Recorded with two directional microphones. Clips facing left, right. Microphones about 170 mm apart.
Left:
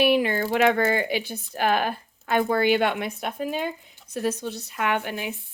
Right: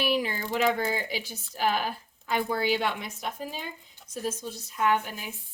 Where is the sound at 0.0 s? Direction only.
60° left (ahead or behind).